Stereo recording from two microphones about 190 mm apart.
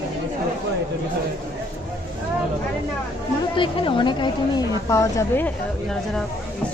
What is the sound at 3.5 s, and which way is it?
A woman's voice, 25° left (ahead or behind).